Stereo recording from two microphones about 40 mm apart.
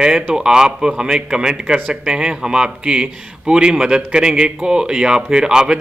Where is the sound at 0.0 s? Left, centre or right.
Centre.